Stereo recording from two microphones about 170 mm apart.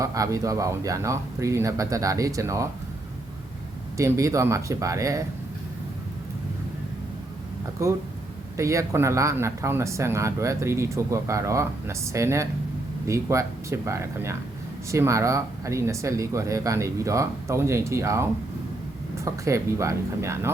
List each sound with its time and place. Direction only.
0.0 s speech: 20° right (ahead or behind)
3.9 s speech: 20° right (ahead or behind)
7.8 s speech: 15° right (ahead or behind)